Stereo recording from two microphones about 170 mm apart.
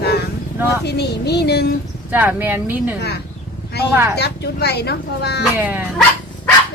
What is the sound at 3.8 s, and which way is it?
Speech, 75° left (ahead or behind).